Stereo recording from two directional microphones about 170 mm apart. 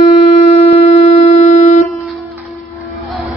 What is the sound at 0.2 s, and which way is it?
Shofar, 40° left (ahead or behind).